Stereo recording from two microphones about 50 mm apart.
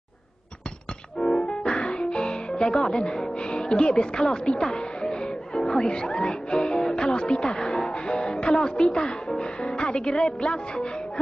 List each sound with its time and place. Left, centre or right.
1.2 s music: centre
1.7 s music: centre
2.5 s a woman's voice: centre
4.2 s music: centre
9.8 s music: left
10.0 s a woman's voice: centre